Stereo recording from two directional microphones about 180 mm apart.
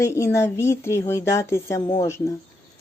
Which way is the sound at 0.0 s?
15° left (ahead or behind).